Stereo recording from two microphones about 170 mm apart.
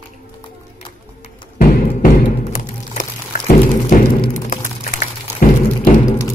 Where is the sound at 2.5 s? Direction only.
50° left (ahead or behind).